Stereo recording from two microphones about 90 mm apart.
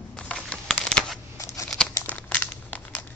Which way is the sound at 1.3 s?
35° left (ahead or behind).